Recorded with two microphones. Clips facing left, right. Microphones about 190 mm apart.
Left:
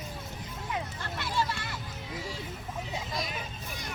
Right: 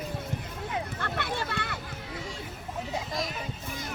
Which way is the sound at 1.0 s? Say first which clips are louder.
Even; 60° right (ahead or behind).